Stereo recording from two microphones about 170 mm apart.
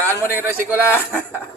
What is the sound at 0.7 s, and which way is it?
Speech, 15° left (ahead or behind).